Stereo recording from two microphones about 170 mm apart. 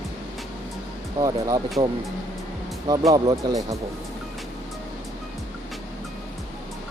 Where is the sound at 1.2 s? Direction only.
20° right (ahead or behind).